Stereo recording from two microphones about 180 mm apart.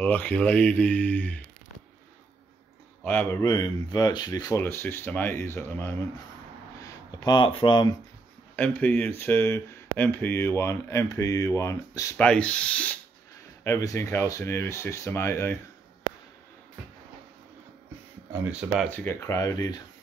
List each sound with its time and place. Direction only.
0.0 s speech: 10° left (ahead or behind)
3.0 s speech: 10° left (ahead or behind); by 7.9 s 25° left (ahead or behind)
8.5 s speech: 10° left (ahead or behind)
12.3 s speech: 5° left (ahead or behind)
13.7 s speech: 15° left (ahead or behind)
18.3 s speech: 10° right (ahead or behind)
18.9 s speech: 10° left (ahead or behind)